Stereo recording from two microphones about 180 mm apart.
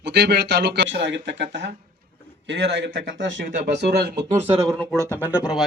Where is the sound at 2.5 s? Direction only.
70° right (ahead or behind); by 3.4 s 90° right.